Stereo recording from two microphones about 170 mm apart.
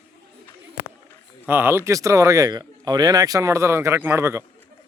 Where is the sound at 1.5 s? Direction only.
15° right (ahead or behind).